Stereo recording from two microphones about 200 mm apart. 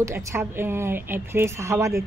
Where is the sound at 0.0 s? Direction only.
10° right (ahead or behind).